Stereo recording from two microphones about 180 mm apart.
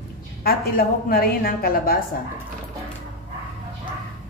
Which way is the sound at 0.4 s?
55° left (ahead or behind).